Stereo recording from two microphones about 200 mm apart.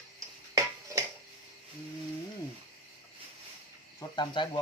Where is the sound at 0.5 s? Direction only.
15° right (ahead or behind).